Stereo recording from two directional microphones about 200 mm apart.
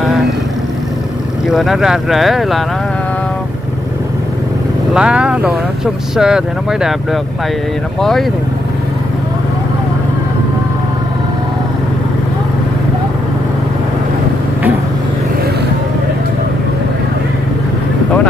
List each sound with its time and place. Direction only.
1.5 s speech: centre (ahead or behind)
4.9 s speech: 5° right (ahead or behind)